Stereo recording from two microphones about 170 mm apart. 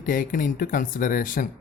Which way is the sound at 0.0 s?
50° left (ahead or behind).